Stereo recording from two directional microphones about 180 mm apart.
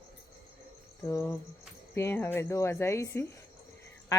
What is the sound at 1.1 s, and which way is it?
Cricket, 20° left (ahead or behind).